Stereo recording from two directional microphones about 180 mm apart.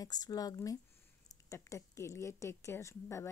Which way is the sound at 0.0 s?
20° left (ahead or behind).